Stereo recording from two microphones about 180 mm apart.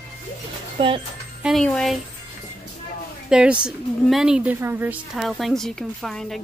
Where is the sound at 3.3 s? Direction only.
5° right (ahead or behind).